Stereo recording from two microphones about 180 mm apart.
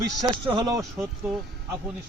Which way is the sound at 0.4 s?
20° right (ahead or behind).